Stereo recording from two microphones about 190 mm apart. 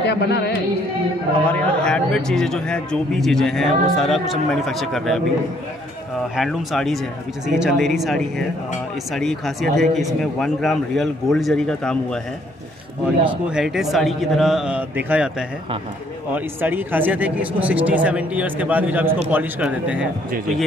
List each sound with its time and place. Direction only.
0.0 s speech: 60° left (ahead or behind)
1.5 s a man's voice: 5° left (ahead or behind)
6.3 s a man's voice: centre (ahead or behind)
13.2 s a man's voice: 5° right (ahead or behind)
16.3 s speech: 10° right (ahead or behind)